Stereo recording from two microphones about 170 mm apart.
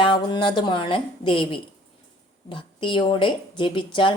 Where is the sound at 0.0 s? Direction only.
30° left (ahead or behind).